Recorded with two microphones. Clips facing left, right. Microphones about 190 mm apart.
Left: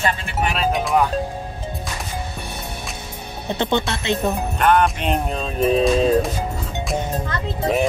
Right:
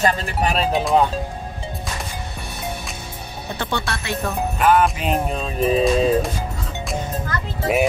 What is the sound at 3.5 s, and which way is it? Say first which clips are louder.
Speech: left 5 dB; 20° left (ahead or behind).